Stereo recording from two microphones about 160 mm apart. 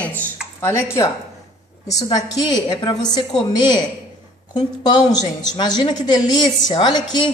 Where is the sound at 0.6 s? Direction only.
15° left (ahead or behind).